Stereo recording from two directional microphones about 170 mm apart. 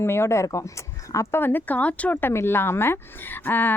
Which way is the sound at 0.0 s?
15° left (ahead or behind).